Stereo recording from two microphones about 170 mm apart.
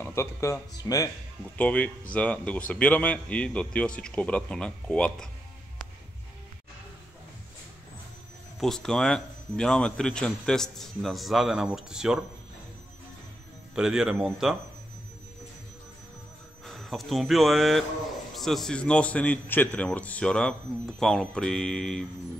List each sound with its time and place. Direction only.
0.0 s speech: 15° left (ahead or behind)
1.6 s a man's voice: 10° left (ahead or behind)
8.5 s a man's voice: 5° left (ahead or behind)
13.7 s a man's voice: 5° right (ahead or behind)
16.6 s a man's voice: centre (ahead or behind)